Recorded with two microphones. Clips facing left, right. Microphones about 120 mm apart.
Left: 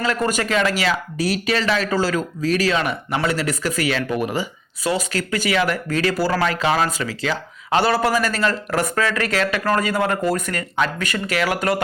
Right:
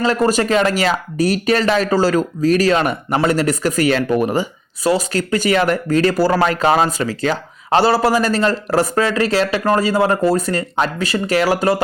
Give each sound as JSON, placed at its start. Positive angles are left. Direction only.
{"t": 0.0, "sound": "a man's voice", "side_deg": -35}